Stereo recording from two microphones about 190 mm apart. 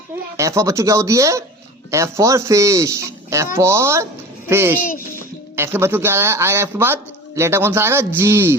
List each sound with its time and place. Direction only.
0.3 s a man's voice: 15° right (ahead or behind)
4.8 s a child's voice: 45° left (ahead or behind)
5.5 s a man's voice: 10° right (ahead or behind)